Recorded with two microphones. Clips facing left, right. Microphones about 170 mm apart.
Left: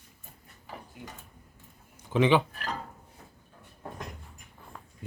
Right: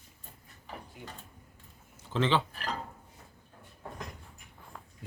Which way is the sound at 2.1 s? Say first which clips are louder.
Left 5 dB; 15° left (ahead or behind).